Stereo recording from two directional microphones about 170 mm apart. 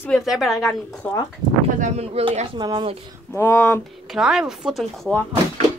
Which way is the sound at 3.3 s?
10° left (ahead or behind).